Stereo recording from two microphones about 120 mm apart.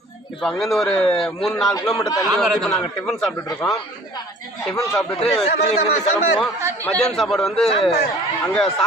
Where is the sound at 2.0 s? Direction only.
30° left (ahead or behind).